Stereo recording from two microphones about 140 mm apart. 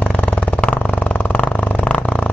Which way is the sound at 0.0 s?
10° left (ahead or behind).